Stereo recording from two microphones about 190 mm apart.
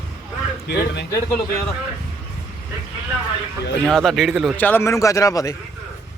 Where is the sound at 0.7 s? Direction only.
65° left (ahead or behind).